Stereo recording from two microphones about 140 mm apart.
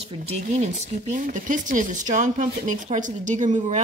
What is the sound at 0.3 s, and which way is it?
Speech, 55° right (ahead or behind).